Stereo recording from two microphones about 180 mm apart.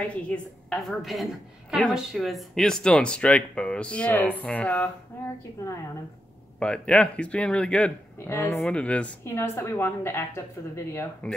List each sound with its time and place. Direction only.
0.0 s a woman's voice: 5° left (ahead or behind)
6.6 s speech: 5° left (ahead or behind)